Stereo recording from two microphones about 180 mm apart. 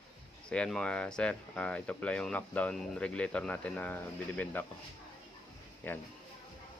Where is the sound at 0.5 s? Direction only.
5° left (ahead or behind).